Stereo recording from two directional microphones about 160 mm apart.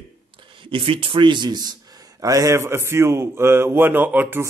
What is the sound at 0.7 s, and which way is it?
A man's voice, 35° right (ahead or behind).